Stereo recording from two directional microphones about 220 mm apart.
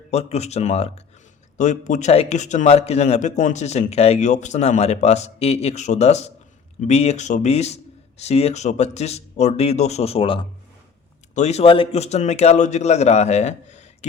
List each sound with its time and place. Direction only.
0.1 s a man's voice: 30° left (ahead or behind)